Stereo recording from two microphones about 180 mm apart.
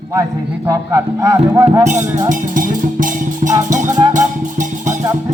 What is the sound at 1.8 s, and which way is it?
Speech, 40° right (ahead or behind).